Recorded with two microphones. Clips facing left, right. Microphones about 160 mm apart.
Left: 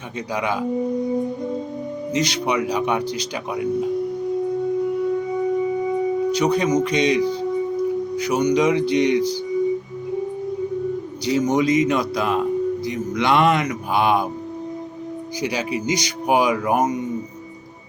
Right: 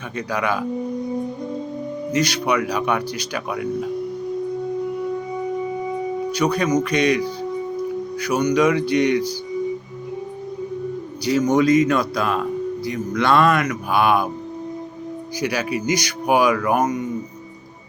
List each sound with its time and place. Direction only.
0.3 s a man's voice: 20° left (ahead or behind)
2.1 s a man's voice: 25° left (ahead or behind)
6.3 s a man's voice: 25° left (ahead or behind)
11.4 s a man's voice: 20° left (ahead or behind)
15.4 s a man's voice: 20° left (ahead or behind)